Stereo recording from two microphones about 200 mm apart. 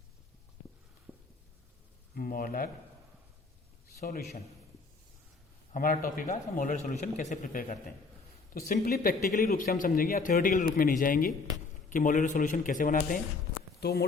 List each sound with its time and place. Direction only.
2.1 s speech: 45° left (ahead or behind)
4.0 s speech: 50° left (ahead or behind)
5.7 s a man's voice: 45° left (ahead or behind)
13.7 s speech: 55° left (ahead or behind)